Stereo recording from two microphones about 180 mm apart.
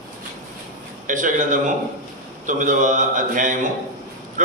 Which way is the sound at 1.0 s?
45° right (ahead or behind).